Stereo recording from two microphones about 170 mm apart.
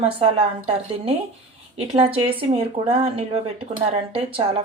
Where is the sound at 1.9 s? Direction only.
35° right (ahead or behind).